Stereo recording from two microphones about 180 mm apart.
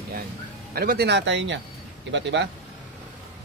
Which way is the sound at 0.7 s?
60° right (ahead or behind).